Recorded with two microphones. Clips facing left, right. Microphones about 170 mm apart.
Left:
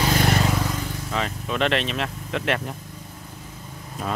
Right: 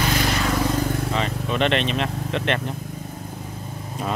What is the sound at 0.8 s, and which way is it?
Vehicle, 60° right (ahead or behind).